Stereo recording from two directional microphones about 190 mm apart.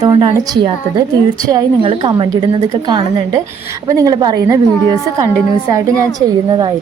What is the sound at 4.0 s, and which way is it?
Speech, 20° right (ahead or behind).